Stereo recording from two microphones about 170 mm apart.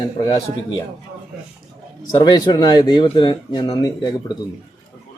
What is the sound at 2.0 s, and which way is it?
Speech, 25° left (ahead or behind).